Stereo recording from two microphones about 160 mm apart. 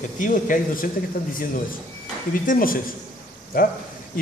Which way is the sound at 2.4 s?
60° left (ahead or behind).